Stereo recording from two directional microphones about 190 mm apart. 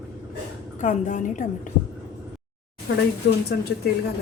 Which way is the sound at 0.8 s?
40° left (ahead or behind).